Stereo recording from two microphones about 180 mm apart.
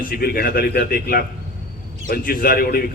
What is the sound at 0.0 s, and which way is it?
A man's voice, 55° left (ahead or behind).